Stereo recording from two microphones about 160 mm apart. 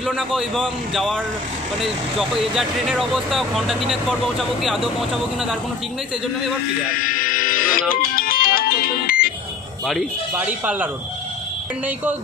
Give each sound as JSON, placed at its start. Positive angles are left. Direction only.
{"t": 0.0, "sound": "speech", "side_deg": -5}
{"t": 7.0, "sound": "music", "side_deg": 60}
{"t": 10.3, "sound": "speech", "side_deg": -10}